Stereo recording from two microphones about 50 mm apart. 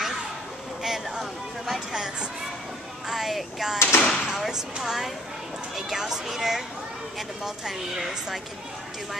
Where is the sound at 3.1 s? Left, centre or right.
Centre.